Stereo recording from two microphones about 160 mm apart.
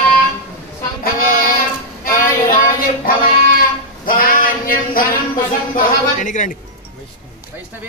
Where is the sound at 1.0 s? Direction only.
65° left (ahead or behind).